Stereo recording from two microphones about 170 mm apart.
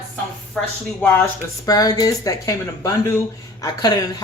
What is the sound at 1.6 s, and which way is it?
Speech, 20° left (ahead or behind).